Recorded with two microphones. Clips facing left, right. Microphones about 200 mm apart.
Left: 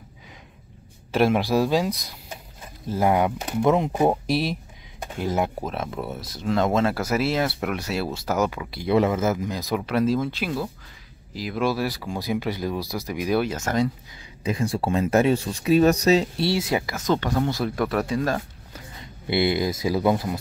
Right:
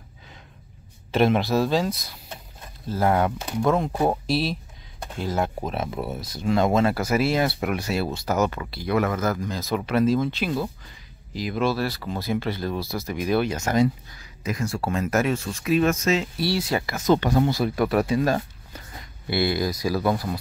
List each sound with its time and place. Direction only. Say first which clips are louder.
1.1 s speech: even; 10° left (ahead or behind)
5.6 s speech: right 1 dB; centre (ahead or behind)
8.7 s speech: left 4 dB; 25° left (ahead or behind)
9.7 s speech: right 1 dB; 5° left (ahead or behind)
14.1 s speech: left 3 dB; 30° left (ahead or behind)
16.4 s speech: left 1 dB; 20° left (ahead or behind)
16.8 s speech: right 1 dB; centre (ahead or behind)
17.1 s speech: right 3 dB; 15° right (ahead or behind)
17.5 s speech: right 2 dB; 5° right (ahead or behind)
19.2 s speech: left 2 dB; 20° left (ahead or behind)